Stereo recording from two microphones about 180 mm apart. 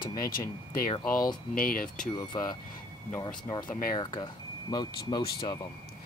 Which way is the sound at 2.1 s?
20° left (ahead or behind).